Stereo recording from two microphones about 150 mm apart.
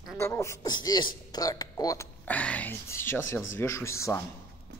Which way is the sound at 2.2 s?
10° left (ahead or behind).